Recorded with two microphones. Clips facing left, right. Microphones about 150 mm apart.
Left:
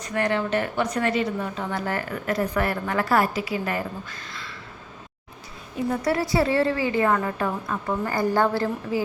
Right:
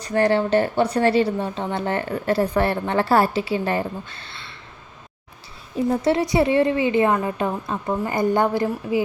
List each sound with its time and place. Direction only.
0.0 s a woman's voice: 30° right (ahead or behind)
5.9 s a woman's voice: 25° right (ahead or behind)